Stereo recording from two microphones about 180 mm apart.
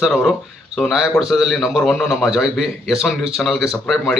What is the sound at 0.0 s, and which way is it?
A man's voice, centre (ahead or behind).